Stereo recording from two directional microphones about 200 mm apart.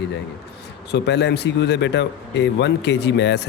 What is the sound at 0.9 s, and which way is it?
A man's voice, 60° left (ahead or behind).